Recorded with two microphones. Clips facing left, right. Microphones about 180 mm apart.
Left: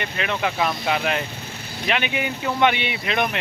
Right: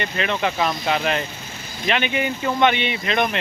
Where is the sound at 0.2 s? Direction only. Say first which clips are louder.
Right 1 dB; 5° left (ahead or behind).